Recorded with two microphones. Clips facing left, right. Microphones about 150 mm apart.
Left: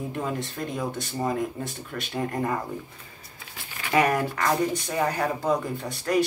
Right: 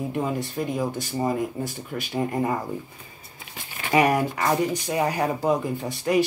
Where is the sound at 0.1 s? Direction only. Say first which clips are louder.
Right 3 dB; 15° right (ahead or behind).